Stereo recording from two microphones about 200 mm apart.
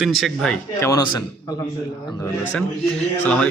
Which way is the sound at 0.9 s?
20° left (ahead or behind).